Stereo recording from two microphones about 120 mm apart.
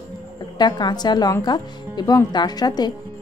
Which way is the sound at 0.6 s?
35° left (ahead or behind).